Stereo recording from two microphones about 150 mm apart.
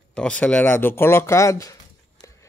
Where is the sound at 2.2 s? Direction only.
20° left (ahead or behind).